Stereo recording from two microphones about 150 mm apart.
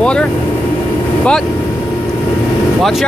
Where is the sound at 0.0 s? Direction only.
5° left (ahead or behind).